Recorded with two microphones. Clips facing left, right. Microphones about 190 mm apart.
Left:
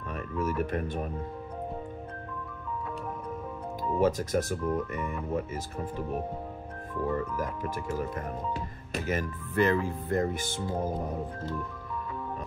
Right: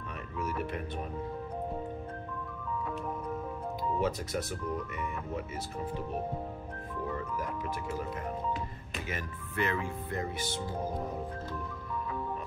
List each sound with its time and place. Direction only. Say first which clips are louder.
0.4 s speech: left 5 dB; 50° left (ahead or behind)
4.0 s speech: left 10 dB; 45° left (ahead or behind)
8.9 s speech: left 9 dB; 40° left (ahead or behind)